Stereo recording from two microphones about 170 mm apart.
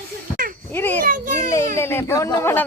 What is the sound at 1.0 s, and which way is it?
Speech, 55° right (ahead or behind).